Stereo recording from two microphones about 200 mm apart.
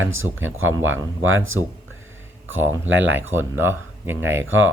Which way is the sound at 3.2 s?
10° right (ahead or behind).